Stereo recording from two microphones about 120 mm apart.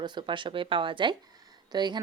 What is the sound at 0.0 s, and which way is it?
Speech, 40° right (ahead or behind).